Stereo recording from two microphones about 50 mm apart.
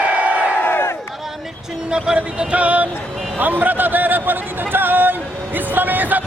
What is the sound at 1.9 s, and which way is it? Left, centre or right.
Music, centre.